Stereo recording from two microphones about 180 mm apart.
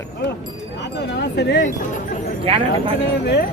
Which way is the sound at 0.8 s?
70° left (ahead or behind).